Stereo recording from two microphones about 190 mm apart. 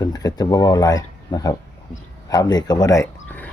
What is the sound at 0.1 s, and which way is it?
Speech, 20° left (ahead or behind).